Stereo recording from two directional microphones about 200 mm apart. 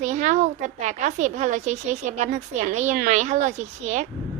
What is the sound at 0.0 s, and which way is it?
A woman's voice, 35° right (ahead or behind).